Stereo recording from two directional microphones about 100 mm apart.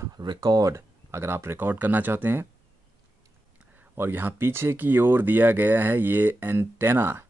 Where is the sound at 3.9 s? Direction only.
20° right (ahead or behind).